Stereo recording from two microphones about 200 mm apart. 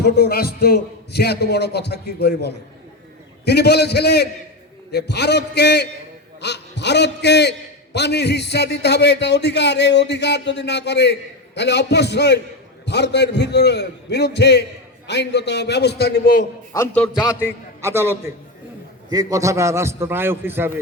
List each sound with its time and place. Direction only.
0.0 s a man's voice: 50° left (ahead or behind)
16.7 s a man's voice: 10° left (ahead or behind)
17.2 s a man's voice: 10° right (ahead or behind)